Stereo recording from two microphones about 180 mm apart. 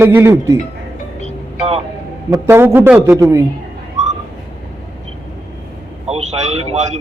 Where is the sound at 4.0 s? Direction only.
40° right (ahead or behind).